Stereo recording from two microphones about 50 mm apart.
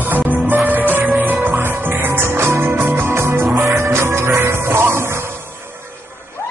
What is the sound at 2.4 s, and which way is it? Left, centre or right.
Music, right.